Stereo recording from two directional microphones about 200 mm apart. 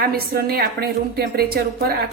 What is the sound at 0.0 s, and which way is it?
A woman's voice, 50° right (ahead or behind).